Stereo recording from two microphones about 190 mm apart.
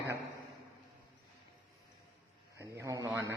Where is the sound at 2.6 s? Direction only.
15° right (ahead or behind).